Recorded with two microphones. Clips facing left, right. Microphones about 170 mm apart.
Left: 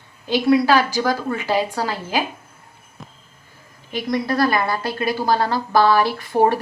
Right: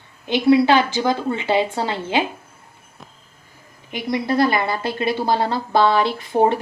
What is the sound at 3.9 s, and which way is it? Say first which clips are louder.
A woman's voice: even; 20° right (ahead or behind).